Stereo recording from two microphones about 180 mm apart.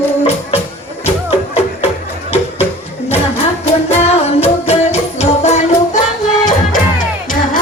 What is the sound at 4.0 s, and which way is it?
Music, 35° left (ahead or behind).